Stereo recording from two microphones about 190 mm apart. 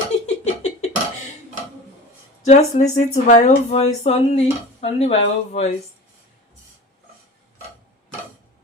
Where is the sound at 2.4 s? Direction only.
35° left (ahead or behind).